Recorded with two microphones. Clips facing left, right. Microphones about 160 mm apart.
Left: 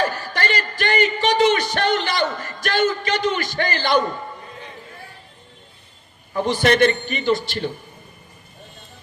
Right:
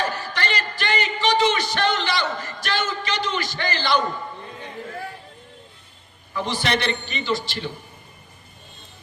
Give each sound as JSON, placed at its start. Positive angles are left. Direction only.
{"t": 0.0, "sound": "a man's voice", "side_deg": 45}
{"t": 6.3, "sound": "a man's voice", "side_deg": 50}